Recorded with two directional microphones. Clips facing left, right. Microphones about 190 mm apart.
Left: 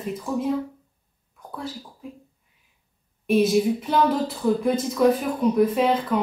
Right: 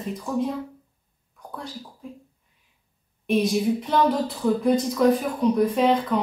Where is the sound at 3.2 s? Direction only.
5° left (ahead or behind).